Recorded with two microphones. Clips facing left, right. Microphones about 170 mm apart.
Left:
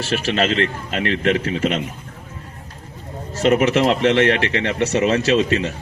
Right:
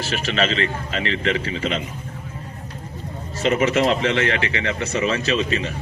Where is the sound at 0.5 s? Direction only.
55° left (ahead or behind).